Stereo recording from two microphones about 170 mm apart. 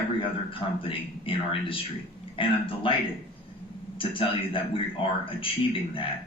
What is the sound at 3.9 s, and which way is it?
Speech, 30° left (ahead or behind).